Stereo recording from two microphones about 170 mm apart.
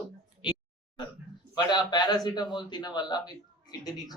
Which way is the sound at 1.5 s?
25° left (ahead or behind).